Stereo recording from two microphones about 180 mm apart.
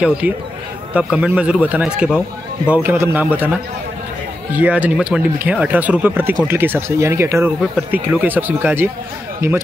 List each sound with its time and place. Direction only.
0.2 s a man's voice: 10° right (ahead or behind)
4.6 s speech: 10° right (ahead or behind)